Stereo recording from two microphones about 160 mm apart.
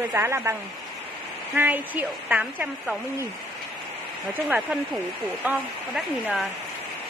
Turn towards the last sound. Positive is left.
turn(degrees=-5)  # may be behind; listen again after turning